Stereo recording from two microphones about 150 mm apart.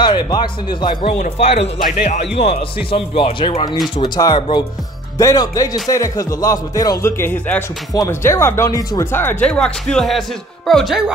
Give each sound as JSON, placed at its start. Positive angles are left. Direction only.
{"t": 0.0, "sound": "speech", "side_deg": 30}
{"t": 1.4, "sound": "speech", "side_deg": 40}
{"t": 5.2, "sound": "speech", "side_deg": 25}